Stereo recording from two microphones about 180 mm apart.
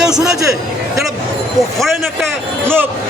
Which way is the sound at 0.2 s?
20° right (ahead or behind).